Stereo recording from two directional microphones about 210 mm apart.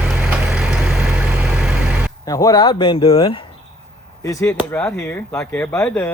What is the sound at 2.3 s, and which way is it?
Speech, 15° left (ahead or behind).